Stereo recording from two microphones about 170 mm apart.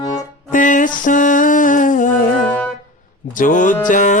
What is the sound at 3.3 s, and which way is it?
Music, 50° left (ahead or behind).